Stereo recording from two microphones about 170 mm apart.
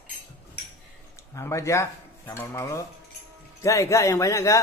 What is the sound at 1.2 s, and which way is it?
Speech, 15° left (ahead or behind).